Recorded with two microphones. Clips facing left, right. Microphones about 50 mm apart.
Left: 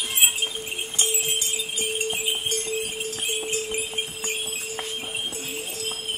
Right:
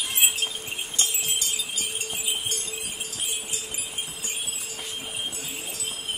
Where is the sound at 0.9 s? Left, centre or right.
Left.